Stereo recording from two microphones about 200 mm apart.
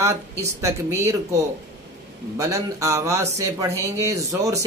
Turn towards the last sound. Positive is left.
turn(degrees=-15)  # may be behind; listen again after turning